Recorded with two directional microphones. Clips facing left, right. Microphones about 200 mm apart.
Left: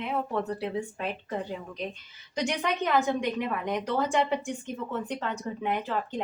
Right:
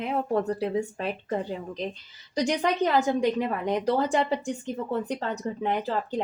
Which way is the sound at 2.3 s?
35° right (ahead or behind).